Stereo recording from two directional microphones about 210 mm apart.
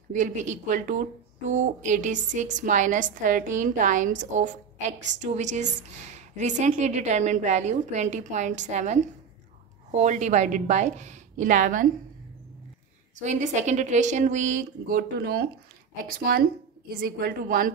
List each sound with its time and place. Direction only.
0.1 s a woman's voice: 35° right (ahead or behind)
13.2 s a woman's voice: 35° right (ahead or behind)